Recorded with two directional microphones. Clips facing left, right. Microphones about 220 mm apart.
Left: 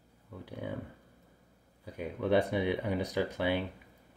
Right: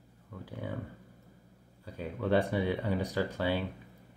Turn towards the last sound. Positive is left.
turn(degrees=15)  # may be behind; listen again after turning